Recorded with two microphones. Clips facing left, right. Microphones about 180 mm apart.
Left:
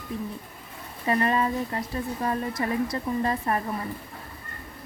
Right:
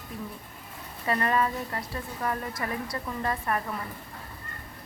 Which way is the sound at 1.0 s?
20° left (ahead or behind).